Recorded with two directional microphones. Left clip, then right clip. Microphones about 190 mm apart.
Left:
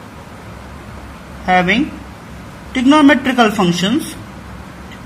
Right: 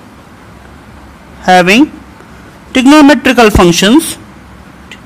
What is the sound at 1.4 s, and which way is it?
A man's voice, 55° right (ahead or behind).